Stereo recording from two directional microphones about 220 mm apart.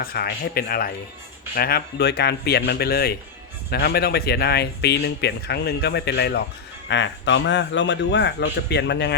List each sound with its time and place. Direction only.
0.0 s speech: 45° left (ahead or behind)